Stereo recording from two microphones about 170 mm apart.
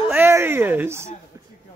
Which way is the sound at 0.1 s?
15° right (ahead or behind).